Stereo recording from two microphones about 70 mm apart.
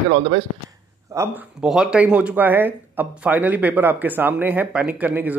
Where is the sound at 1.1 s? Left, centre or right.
Right.